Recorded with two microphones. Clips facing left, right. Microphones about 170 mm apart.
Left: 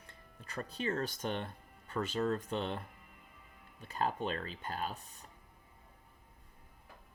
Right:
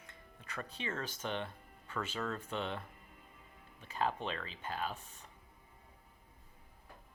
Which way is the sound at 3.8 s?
40° left (ahead or behind).